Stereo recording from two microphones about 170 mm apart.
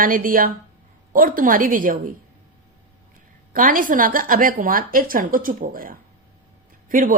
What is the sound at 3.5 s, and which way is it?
A woman's voice, 55° right (ahead or behind).